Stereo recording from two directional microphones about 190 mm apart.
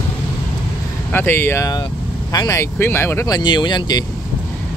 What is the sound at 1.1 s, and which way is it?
Speech, 10° left (ahead or behind).